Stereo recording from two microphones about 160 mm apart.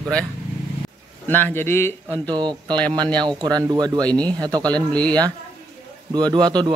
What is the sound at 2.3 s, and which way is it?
A man's voice, 30° right (ahead or behind).